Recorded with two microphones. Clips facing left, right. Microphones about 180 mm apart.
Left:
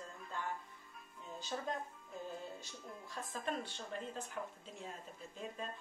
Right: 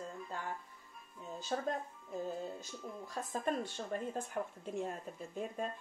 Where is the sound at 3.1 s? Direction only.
45° right (ahead or behind).